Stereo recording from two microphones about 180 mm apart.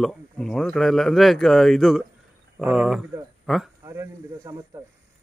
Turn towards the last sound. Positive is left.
turn(degrees=-20)  # may be behind; listen again after turning